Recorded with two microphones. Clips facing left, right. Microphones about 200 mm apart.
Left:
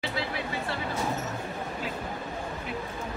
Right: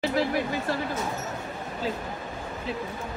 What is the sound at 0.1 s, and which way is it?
Speech, 45° right (ahead or behind).